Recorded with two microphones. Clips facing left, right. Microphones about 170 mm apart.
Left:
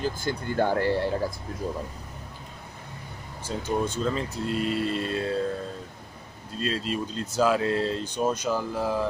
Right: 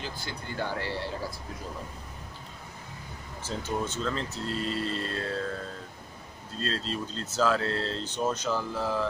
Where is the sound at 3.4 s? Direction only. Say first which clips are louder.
Left 4 dB; 15° left (ahead or behind).